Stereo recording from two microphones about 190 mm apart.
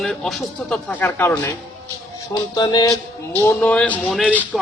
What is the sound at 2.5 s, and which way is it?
Music, 20° left (ahead or behind).